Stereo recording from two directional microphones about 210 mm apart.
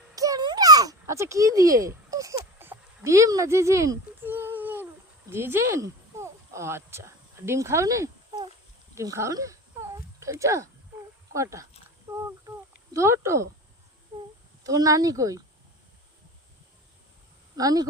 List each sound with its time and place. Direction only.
0.2 s a sound: 20° right (ahead or behind)
11.3 s speech: 15° right (ahead or behind)
12.9 s speech: 15° right (ahead or behind)
14.6 s speech: 15° right (ahead or behind)
17.6 s speech: 15° right (ahead or behind)